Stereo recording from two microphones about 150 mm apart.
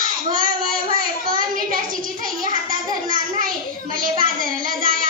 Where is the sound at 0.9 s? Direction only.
65° right (ahead or behind).